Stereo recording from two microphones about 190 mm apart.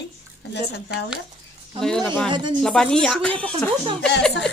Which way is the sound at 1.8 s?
5° left (ahead or behind).